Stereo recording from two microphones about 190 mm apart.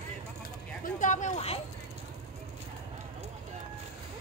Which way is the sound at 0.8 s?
45° left (ahead or behind).